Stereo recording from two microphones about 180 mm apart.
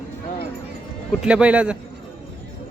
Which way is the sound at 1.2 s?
5° right (ahead or behind).